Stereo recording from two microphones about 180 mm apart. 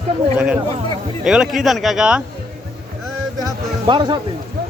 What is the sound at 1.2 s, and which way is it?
Speech, 5° right (ahead or behind).